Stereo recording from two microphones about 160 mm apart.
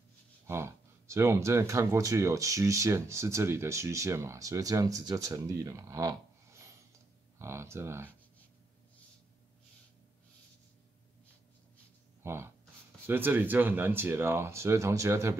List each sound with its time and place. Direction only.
0.5 s speech: 15° right (ahead or behind)
7.3 s speech: 15° right (ahead or behind)
12.2 s a sound: 15° right (ahead or behind)
13.0 s speech: 15° right (ahead or behind)